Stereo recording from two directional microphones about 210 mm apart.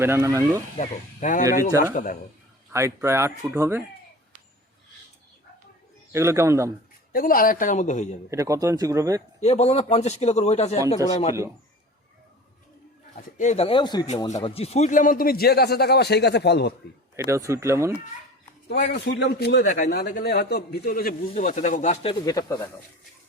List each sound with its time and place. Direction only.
0.0 s speech: 15° right (ahead or behind)
0.8 s a man's voice: 40° left (ahead or behind)
2.7 s speech: 15° right (ahead or behind)
6.1 s speech: 15° right (ahead or behind)
7.1 s a man's voice: 45° left (ahead or behind)
8.3 s speech: 15° right (ahead or behind)
9.4 s a man's voice: 30° left (ahead or behind)
13.1 s speech: 35° left (ahead or behind); by 16.7 s 50° left (ahead or behind)
17.2 s speech: 15° right (ahead or behind)
18.9 s speech: 50° left (ahead or behind)
20.0 s speech: 50° left (ahead or behind)
22.3 s speech: 15° left (ahead or behind)